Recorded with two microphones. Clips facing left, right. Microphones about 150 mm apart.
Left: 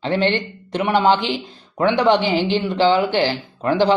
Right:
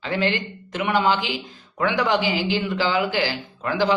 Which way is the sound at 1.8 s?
25° left (ahead or behind).